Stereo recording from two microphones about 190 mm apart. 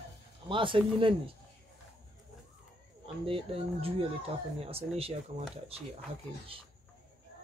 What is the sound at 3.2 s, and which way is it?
Speech, 30° right (ahead or behind).